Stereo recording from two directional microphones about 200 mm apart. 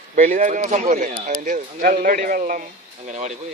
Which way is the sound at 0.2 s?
40° right (ahead or behind).